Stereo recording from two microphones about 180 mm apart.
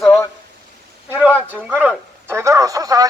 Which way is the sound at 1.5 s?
10° right (ahead or behind).